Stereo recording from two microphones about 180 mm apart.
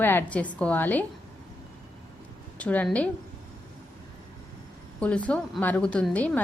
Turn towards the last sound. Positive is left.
turn(degrees=10)  # may be behind; listen again after turning